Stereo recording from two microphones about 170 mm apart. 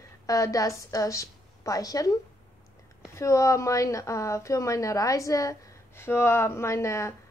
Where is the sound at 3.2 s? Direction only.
20° left (ahead or behind).